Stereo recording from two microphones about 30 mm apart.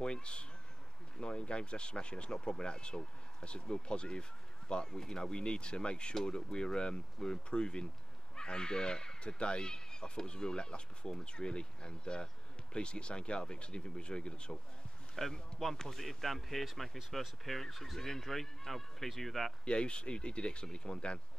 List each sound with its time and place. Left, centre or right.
0.0 s speech: left
15.2 s speech: centre
19.6 s speech: left